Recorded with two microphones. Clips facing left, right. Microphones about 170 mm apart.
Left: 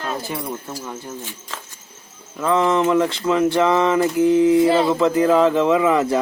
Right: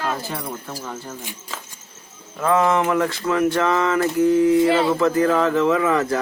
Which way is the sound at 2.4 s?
20° left (ahead or behind).